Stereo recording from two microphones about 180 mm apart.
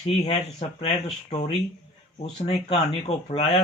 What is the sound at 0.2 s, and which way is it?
Speech, 35° left (ahead or behind).